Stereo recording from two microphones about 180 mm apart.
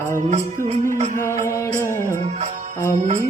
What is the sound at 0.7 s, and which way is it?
Music, 40° right (ahead or behind).